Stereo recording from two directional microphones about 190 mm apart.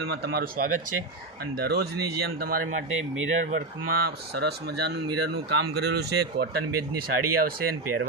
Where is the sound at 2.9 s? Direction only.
90° right.